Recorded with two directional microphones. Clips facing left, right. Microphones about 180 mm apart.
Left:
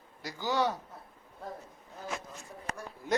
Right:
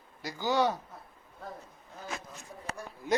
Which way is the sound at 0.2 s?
Centre (ahead or behind).